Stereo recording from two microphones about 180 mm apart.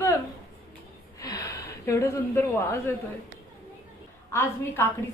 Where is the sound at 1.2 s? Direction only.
20° left (ahead or behind).